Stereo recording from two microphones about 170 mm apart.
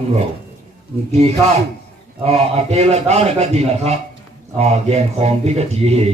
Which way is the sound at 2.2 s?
40° right (ahead or behind).